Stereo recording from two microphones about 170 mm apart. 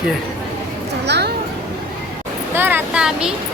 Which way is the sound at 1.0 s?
80° right.